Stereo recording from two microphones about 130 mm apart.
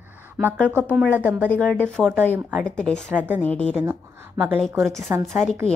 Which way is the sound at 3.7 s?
15° right (ahead or behind).